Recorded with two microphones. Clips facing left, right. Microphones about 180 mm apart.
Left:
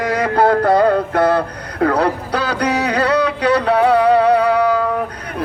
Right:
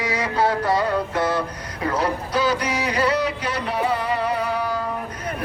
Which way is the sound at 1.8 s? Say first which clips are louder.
Left 7 dB; 65° left (ahead or behind).